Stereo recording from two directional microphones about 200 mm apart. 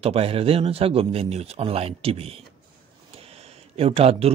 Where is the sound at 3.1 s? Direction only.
30° right (ahead or behind).